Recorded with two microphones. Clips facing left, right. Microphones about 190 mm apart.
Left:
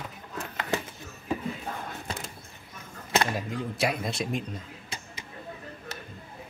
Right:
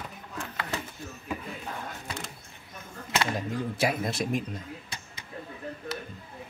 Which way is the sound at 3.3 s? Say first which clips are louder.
Right 1 dB; centre (ahead or behind).